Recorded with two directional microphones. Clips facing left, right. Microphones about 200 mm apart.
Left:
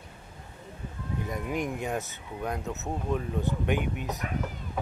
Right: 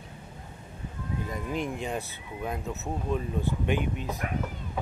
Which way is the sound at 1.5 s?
15° left (ahead or behind).